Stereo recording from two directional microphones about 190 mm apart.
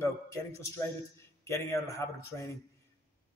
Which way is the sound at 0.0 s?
15° left (ahead or behind).